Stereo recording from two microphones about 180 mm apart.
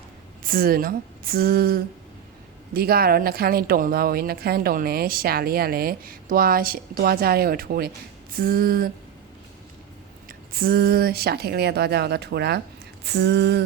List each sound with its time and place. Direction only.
0.4 s speech: 55° right (ahead or behind)
10.2 s speech: 55° right (ahead or behind)
13.1 s a sound: 65° right (ahead or behind)